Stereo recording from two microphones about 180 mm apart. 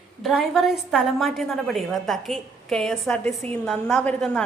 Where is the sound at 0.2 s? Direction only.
Centre (ahead or behind).